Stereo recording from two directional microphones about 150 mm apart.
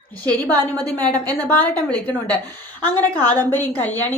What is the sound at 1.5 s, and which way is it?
A woman's voice, 10° left (ahead or behind).